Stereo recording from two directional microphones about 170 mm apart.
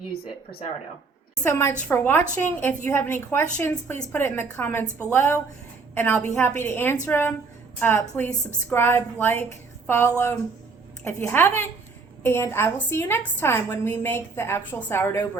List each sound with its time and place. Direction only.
1.5 s a woman's voice: 15° left (ahead or behind)